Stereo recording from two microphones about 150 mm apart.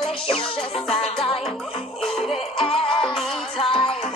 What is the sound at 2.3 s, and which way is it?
Music, 35° left (ahead or behind).